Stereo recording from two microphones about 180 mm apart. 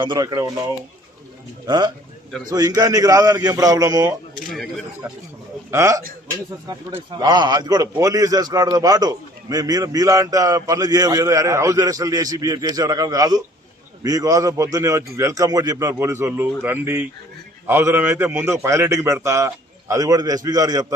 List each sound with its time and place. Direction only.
0.0 s a man's voice: 25° right (ahead or behind)
1.6 s a man's voice: 20° right (ahead or behind)
4.4 s speech: 5° left (ahead or behind)
5.0 s a man's voice: 15° right (ahead or behind)